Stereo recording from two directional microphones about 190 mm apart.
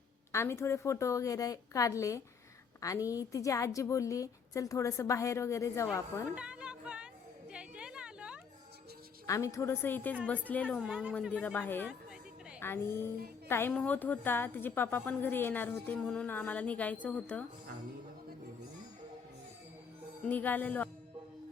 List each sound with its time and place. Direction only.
0.3 s a woman's voice: 15° left (ahead or behind)
6.3 s music: 5° right (ahead or behind)
7.5 s a sound: 5° right (ahead or behind)
9.2 s a woman's voice: 15° left (ahead or behind); by 11.1 s 5° right (ahead or behind)
11.2 s a woman's voice: 5° left (ahead or behind)
20.2 s a woman's voice: 10° left (ahead or behind)